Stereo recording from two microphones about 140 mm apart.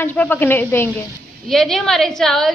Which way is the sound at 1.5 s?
Centre (ahead or behind).